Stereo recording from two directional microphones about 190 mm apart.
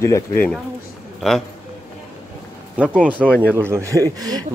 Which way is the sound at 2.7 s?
5° right (ahead or behind).